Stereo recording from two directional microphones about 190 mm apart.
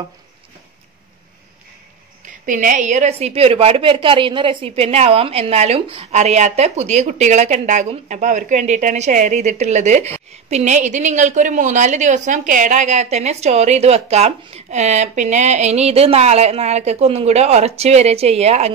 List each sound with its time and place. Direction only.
2.2 s a woman's voice: 45° right (ahead or behind)